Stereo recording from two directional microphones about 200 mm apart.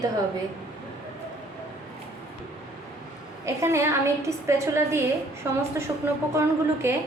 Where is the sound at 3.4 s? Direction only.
15° right (ahead or behind).